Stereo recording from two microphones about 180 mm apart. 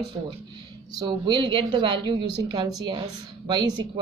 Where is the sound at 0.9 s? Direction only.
25° right (ahead or behind).